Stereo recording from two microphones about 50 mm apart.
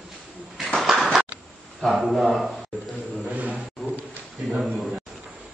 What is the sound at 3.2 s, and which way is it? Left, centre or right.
Vehicle, right.